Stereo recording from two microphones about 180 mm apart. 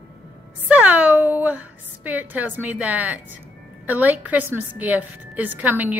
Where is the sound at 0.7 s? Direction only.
10° right (ahead or behind).